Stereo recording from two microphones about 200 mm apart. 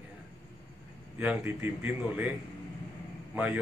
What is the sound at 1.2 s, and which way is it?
Speech, 10° right (ahead or behind).